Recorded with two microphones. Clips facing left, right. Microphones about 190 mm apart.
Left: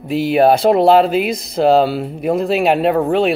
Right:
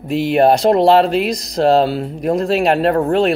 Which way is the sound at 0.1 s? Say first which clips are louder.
Even; 5° left (ahead or behind).